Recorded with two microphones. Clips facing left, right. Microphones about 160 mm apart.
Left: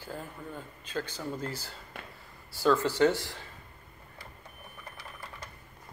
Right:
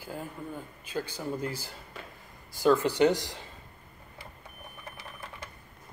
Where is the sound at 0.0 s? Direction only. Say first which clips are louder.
Right 2 dB; 10° right (ahead or behind).